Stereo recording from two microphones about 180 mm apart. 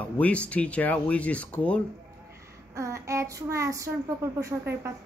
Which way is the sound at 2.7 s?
15° right (ahead or behind).